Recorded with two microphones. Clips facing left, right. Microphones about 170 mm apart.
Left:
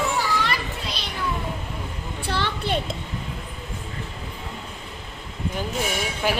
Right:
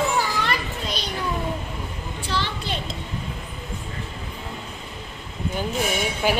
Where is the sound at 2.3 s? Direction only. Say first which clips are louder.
Left 3 dB; 60° left (ahead or behind).